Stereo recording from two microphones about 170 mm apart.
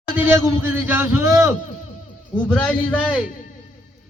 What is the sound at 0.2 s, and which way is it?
A man's voice, 15° right (ahead or behind).